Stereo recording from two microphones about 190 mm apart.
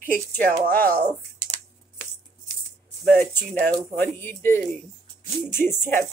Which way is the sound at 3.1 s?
10° left (ahead or behind).